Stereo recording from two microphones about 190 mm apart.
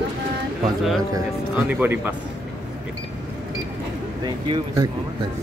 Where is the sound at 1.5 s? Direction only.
10° right (ahead or behind).